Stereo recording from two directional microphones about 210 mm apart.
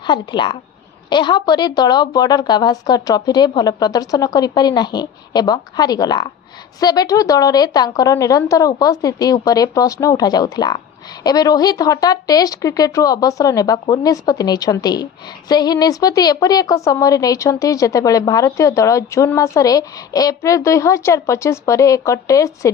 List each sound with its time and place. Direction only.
0.1 s a woman's voice: 20° left (ahead or behind)